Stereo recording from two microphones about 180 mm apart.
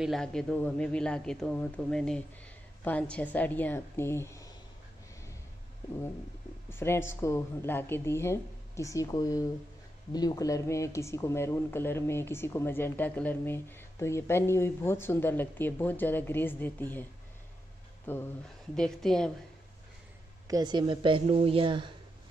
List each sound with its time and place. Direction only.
0.0 s speech: centre (ahead or behind)
6.7 s speech: 15° left (ahead or behind)
18.1 s speech: 10° left (ahead or behind)
20.4 s a woman's voice: 20° right (ahead or behind)